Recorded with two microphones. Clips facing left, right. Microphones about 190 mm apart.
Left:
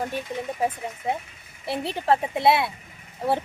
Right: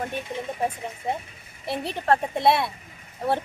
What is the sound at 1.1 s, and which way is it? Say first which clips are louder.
A woman's voice: left 1 dB; centre (ahead or behind).